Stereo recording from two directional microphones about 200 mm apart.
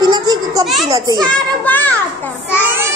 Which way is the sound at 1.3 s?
10° left (ahead or behind).